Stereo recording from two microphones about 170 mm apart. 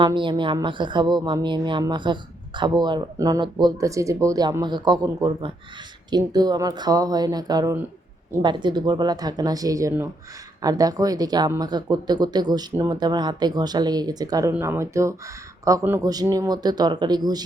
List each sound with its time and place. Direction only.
0.0 s speech: 30° right (ahead or behind)